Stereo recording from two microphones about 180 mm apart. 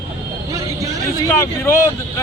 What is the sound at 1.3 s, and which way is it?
Speech, 15° left (ahead or behind).